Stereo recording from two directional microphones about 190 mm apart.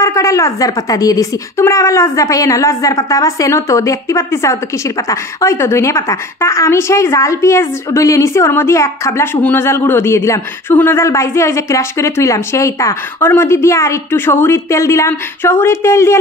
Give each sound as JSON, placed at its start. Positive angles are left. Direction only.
{"t": 0.0, "sound": "speech", "side_deg": 15}